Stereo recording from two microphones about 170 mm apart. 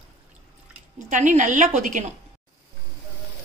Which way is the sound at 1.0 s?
45° right (ahead or behind).